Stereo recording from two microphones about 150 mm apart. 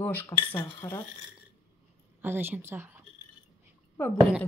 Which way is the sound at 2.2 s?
15° right (ahead or behind).